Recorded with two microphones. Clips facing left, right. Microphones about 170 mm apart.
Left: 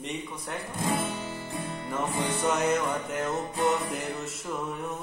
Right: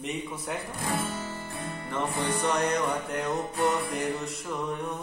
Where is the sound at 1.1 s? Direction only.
10° left (ahead or behind).